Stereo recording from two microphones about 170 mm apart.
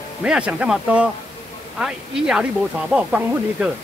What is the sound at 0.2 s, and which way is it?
Speech, 5° right (ahead or behind).